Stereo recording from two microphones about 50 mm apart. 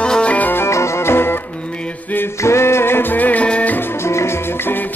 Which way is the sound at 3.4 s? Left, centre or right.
Left.